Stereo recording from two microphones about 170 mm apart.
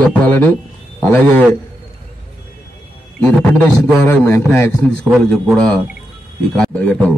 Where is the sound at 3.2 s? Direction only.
5° left (ahead or behind).